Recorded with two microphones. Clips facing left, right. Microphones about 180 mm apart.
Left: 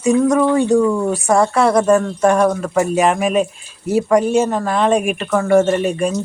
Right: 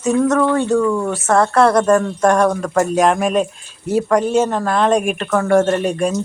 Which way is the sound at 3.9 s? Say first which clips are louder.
Left 1 dB; 10° left (ahead or behind).